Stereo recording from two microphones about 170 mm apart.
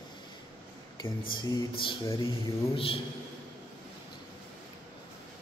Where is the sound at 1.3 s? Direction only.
25° left (ahead or behind).